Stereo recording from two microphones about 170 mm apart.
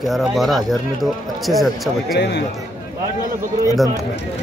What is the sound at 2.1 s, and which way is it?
Speech, 80° left.